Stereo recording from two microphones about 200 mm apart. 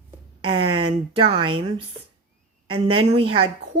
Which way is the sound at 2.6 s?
25° right (ahead or behind).